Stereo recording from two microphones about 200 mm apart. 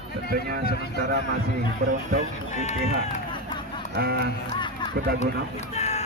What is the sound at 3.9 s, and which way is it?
Speech, 50° right (ahead or behind).